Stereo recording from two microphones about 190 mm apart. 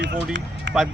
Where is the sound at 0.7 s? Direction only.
70° right (ahead or behind).